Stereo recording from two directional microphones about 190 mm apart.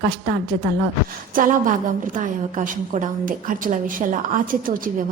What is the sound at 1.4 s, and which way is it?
A woman's voice, 45° right (ahead or behind).